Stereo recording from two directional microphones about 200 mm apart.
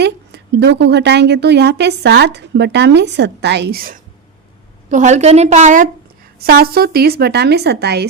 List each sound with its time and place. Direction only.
0.0 s a woman's voice: 55° right (ahead or behind)
4.9 s a woman's voice: 40° right (ahead or behind); by 8.0 s 55° right (ahead or behind)